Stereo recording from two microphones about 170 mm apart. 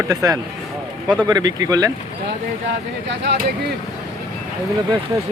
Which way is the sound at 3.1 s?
90° right.